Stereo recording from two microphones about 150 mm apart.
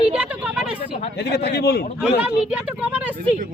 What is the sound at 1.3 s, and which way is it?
Speech, 90° left.